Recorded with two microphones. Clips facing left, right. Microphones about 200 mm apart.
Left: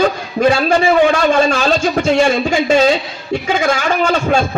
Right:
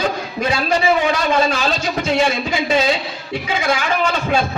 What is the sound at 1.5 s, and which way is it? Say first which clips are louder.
A man's voice: left 6 dB; 45° left (ahead or behind).